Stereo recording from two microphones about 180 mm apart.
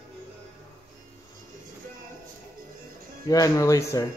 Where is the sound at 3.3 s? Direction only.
20° left (ahead or behind).